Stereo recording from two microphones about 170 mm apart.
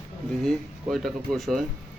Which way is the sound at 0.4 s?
Centre (ahead or behind).